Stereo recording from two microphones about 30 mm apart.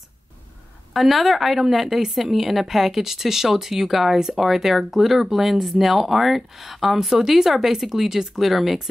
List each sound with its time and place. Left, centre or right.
0.9 s speech: centre